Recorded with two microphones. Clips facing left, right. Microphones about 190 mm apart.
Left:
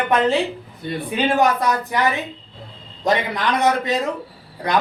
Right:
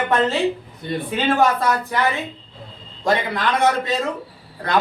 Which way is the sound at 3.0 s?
20° left (ahead or behind).